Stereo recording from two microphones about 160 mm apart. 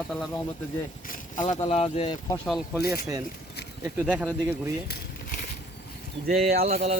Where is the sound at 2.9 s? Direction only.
20° right (ahead or behind).